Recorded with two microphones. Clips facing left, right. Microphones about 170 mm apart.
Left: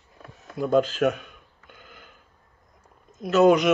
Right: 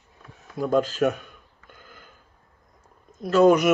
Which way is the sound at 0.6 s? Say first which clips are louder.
Left 1 dB; centre (ahead or behind).